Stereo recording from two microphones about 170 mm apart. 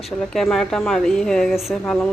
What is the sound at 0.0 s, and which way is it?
A woman's voice, centre (ahead or behind).